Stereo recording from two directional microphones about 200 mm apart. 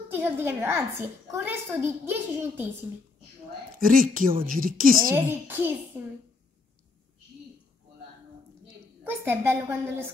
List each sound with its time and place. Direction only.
0.1 s a woman's voice: 10° right (ahead or behind)
3.8 s speech: 45° right (ahead or behind)
5.1 s a woman's voice: 10° right (ahead or behind)
9.0 s a woman's voice: 10° right (ahead or behind)